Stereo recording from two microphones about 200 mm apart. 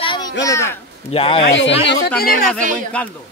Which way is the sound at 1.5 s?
65° left (ahead or behind).